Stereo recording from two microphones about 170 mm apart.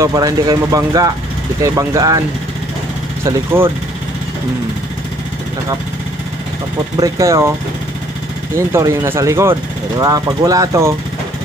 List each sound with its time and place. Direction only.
0.0 s speech: 20° right (ahead or behind)
3.3 s speech: 15° right (ahead or behind)
7.0 s speech: 20° right (ahead or behind)
8.5 s speech: 15° right (ahead or behind)